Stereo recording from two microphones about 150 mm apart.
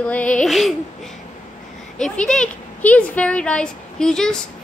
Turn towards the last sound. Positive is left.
turn(degrees=5)  # may be behind; listen again after turning